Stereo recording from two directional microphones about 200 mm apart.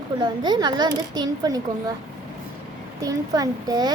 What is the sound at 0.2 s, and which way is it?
A child's voice, 20° right (ahead or behind).